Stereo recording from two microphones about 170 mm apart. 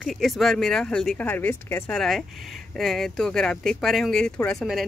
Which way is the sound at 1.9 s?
Centre (ahead or behind).